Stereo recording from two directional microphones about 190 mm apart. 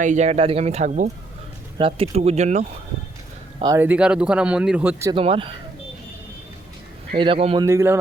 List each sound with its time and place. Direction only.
0.0 s speech: 40° right (ahead or behind)
3.6 s speech: 20° right (ahead or behind)
3.8 s speech: 5° right (ahead or behind)
5.1 s speech: 30° right (ahead or behind)
7.2 s speech: 30° right (ahead or behind)
7.6 s speech: 15° right (ahead or behind)